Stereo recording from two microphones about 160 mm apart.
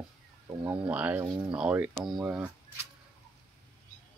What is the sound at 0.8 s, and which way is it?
Speech, 10° right (ahead or behind).